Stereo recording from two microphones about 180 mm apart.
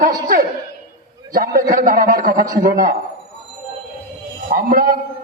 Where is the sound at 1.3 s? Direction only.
50° right (ahead or behind).